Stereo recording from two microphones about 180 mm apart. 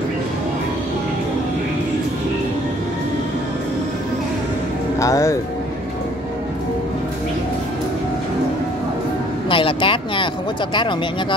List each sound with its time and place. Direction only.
4.9 s speech: 15° left (ahead or behind)
9.5 s vehicle: 30° left (ahead or behind)
10.7 s speech: 25° left (ahead or behind)